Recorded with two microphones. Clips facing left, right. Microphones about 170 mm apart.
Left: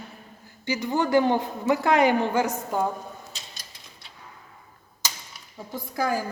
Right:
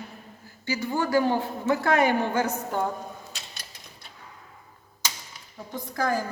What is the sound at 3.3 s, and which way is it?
Mechanisms, 65° right (ahead or behind).